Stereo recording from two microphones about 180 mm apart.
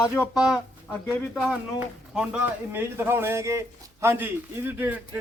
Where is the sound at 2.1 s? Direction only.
5° right (ahead or behind).